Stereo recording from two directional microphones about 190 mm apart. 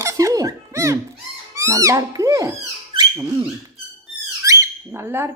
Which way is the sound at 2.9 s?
20° right (ahead or behind).